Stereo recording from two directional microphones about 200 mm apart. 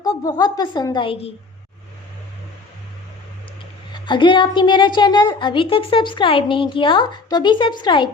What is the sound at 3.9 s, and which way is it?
A woman's voice, 25° left (ahead or behind).